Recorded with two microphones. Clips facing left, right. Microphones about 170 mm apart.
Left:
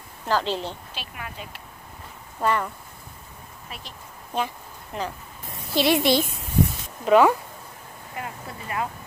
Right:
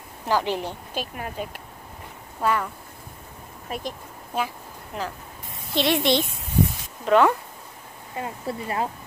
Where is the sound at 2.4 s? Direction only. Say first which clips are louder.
Even; 5° right (ahead or behind).